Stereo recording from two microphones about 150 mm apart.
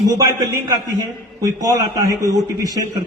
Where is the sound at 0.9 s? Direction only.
25° right (ahead or behind).